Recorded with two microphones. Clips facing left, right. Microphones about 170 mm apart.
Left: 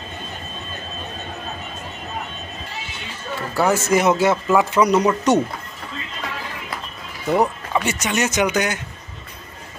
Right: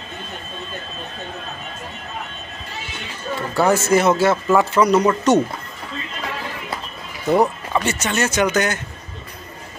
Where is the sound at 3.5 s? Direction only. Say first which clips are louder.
Right 2 dB; 10° left (ahead or behind).